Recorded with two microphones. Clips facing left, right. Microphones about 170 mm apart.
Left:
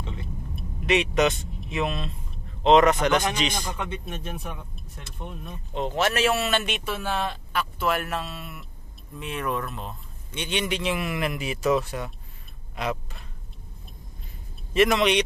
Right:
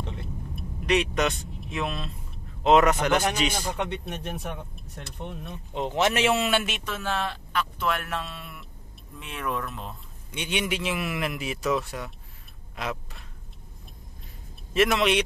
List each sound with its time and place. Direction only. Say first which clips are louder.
0.8 s a man's voice: left 2 dB; centre (ahead or behind)
3.7 s speech: right 2 dB; 70° right (ahead or behind)
5.8 s a man's voice: even; 15° right (ahead or behind)
6.8 s a man's voice: left 2 dB; 10° left (ahead or behind)
10.3 s a man's voice: left 1 dB; 10° right (ahead or behind)
14.7 s a man's voice: left 2 dB; centre (ahead or behind)